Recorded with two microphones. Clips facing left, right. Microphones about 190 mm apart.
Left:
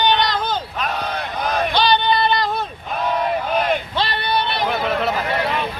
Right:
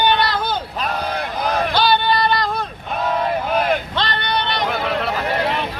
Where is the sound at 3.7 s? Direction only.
5° left (ahead or behind).